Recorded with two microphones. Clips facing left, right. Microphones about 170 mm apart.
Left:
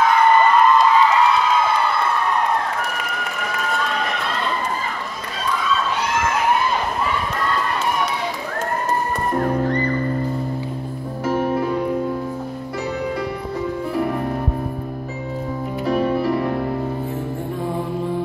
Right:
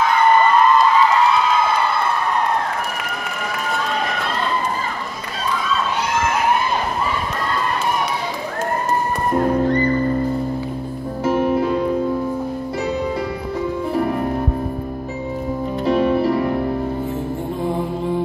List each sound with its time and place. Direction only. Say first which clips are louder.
15.8 s music: right 3 dB; 25° right (ahead or behind)